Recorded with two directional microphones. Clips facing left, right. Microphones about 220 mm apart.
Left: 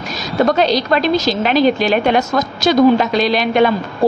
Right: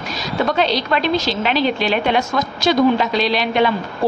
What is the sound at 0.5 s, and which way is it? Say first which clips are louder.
A woman's voice: left 4 dB; 45° left (ahead or behind).